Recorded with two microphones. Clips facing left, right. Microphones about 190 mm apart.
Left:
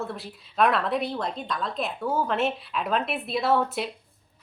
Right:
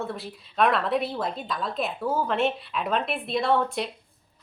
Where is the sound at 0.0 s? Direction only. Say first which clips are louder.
Right 1 dB; centre (ahead or behind).